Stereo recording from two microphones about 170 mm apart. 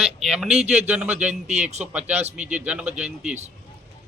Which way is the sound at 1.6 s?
40° right (ahead or behind).